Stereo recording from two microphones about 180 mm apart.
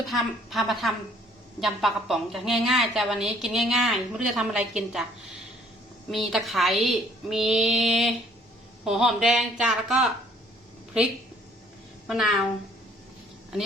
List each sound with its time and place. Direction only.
0.1 s a woman's voice: centre (ahead or behind)
6.1 s a woman's voice: centre (ahead or behind)
12.0 s a woman's voice: centre (ahead or behind)